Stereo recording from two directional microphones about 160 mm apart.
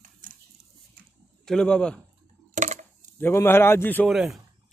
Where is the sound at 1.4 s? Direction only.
5° left (ahead or behind).